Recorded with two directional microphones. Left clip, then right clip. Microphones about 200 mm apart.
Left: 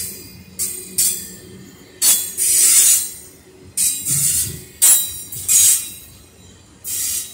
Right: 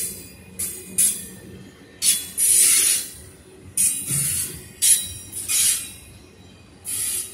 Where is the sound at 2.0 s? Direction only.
50° left (ahead or behind).